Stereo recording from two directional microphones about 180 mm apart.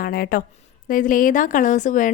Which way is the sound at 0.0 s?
55° left (ahead or behind).